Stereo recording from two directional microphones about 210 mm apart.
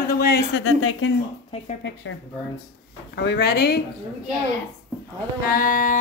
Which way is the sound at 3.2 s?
55° left (ahead or behind).